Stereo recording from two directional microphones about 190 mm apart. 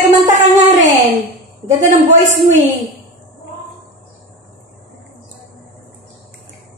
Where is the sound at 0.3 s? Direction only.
40° right (ahead or behind).